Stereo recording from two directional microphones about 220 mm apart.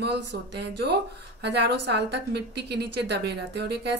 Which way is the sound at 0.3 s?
50° right (ahead or behind).